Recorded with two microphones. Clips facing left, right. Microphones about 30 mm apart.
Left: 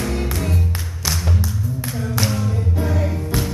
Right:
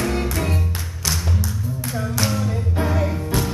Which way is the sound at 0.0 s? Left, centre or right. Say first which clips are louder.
Right 1 dB; centre.